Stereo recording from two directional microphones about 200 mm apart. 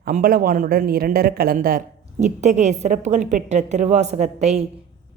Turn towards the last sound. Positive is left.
turn(degrees=-35)  # may be behind; listen again after turning